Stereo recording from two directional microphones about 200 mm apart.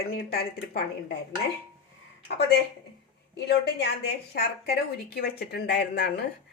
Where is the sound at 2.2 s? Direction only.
55° left (ahead or behind).